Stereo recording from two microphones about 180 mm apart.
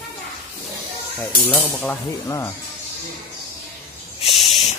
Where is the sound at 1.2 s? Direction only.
10° left (ahead or behind).